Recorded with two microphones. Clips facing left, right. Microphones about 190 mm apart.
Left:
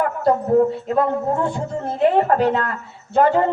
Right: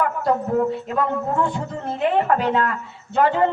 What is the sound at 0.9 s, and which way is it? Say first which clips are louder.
Speech: left 3 dB; 35° left (ahead or behind).